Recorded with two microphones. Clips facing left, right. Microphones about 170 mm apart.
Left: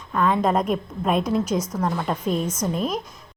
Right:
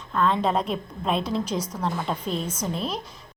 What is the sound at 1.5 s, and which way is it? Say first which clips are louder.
Speech: left 4 dB; 10° right (ahead or behind).